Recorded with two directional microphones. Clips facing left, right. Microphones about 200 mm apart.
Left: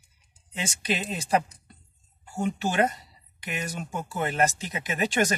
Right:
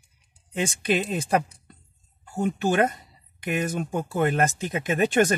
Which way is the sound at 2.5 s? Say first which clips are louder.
Right 3 dB; 55° right (ahead or behind).